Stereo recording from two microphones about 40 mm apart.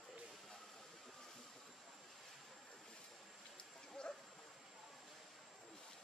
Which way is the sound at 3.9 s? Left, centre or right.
Centre.